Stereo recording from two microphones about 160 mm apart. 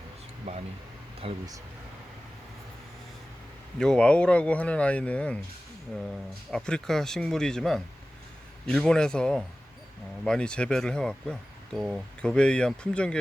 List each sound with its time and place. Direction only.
0.5 s speech: 45° right (ahead or behind)
3.8 s speech: 5° left (ahead or behind)
6.5 s speech: 5° left (ahead or behind)